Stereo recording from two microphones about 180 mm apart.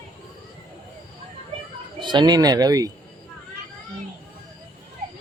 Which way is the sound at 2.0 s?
25° right (ahead or behind).